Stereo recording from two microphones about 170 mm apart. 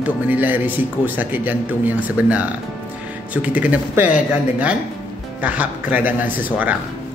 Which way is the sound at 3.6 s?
10° right (ahead or behind).